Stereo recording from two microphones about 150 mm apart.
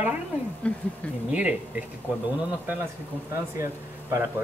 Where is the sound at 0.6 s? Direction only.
10° left (ahead or behind).